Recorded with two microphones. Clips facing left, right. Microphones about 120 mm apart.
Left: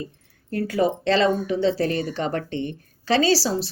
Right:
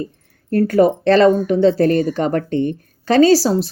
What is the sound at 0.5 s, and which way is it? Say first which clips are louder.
Speech: right 8 dB; 55° right (ahead or behind).